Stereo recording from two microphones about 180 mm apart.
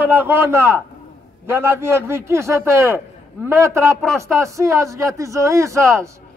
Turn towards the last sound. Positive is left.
turn(degrees=-15)  # may be behind; listen again after turning